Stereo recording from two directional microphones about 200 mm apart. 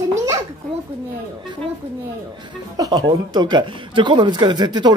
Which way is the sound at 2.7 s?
20° right (ahead or behind).